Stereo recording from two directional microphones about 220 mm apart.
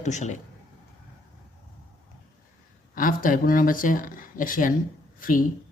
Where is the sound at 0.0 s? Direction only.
35° left (ahead or behind).